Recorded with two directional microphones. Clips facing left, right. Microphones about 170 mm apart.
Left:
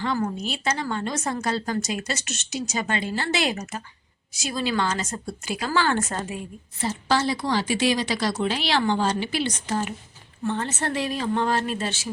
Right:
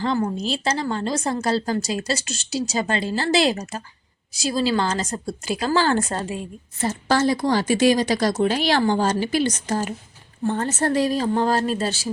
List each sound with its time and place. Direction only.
0.0 s a woman's voice: 30° right (ahead or behind)
6.8 s a woman's voice: 45° right (ahead or behind)